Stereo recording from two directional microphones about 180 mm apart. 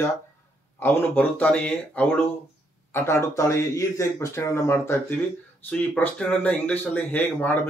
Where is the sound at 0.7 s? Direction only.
10° left (ahead or behind).